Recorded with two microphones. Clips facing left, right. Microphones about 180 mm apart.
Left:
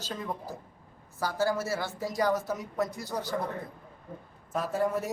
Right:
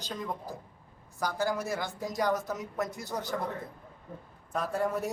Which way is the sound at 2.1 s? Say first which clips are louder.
Left 2 dB; centre (ahead or behind).